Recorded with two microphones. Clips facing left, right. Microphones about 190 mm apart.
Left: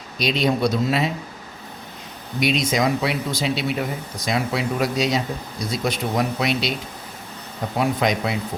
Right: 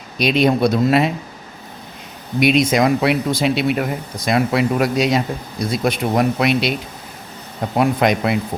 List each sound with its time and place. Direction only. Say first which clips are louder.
0.2 s speech: right 5 dB; 60° right (ahead or behind)
2.4 s speech: right 6 dB; 60° right (ahead or behind)
7.8 s speech: right 5 dB; 60° right (ahead or behind)